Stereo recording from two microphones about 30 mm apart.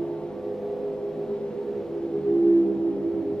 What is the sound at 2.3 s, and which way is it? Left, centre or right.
Music, left.